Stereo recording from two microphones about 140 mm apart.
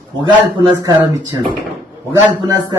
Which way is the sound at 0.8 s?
30° right (ahead or behind).